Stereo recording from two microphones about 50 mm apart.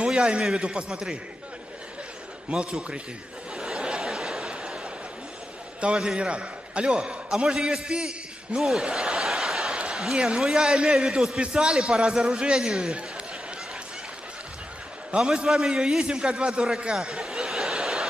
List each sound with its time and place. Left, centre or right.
0.0 s a sound: right
0.6 s a man's voice: right
2.5 s a man's voice: centre
3.5 s snicker: centre
5.8 s a man's voice: centre
10.1 s a man's voice: centre
11.3 s a man's voice: right
15.0 s a man's voice: centre